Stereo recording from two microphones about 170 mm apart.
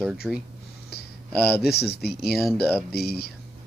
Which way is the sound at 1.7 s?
70° left (ahead or behind).